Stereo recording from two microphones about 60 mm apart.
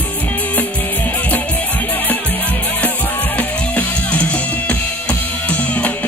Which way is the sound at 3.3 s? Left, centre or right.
Left.